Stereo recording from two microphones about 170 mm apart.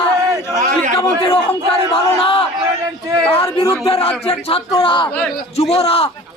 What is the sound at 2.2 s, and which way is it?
Crowd, 30° left (ahead or behind).